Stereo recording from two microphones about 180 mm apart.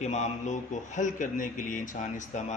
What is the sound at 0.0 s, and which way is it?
A man's voice, 40° left (ahead or behind).